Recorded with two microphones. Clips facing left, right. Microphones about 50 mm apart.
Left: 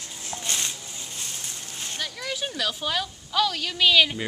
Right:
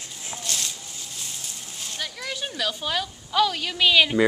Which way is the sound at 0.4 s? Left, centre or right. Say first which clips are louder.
Left 1 dB; left.